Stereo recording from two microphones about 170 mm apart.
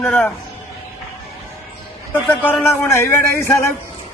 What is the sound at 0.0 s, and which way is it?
Speech, 5° left (ahead or behind).